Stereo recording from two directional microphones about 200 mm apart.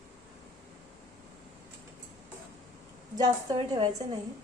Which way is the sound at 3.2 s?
20° right (ahead or behind).